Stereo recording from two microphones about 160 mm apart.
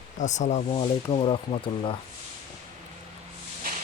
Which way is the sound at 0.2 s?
50° left (ahead or behind).